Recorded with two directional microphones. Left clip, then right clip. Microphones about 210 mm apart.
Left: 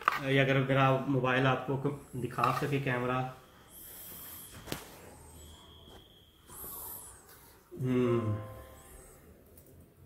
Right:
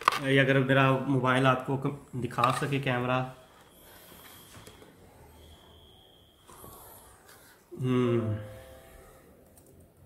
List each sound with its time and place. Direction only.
0.1 s speech: 25° right (ahead or behind)
0.5 s speech: 45° right (ahead or behind)
7.8 s speech: 35° right (ahead or behind)